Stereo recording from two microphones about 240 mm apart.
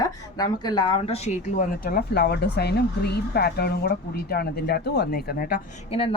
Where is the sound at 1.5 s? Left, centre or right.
Left.